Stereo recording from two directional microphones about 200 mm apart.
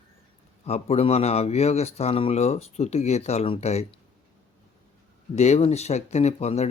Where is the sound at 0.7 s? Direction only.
35° left (ahead or behind).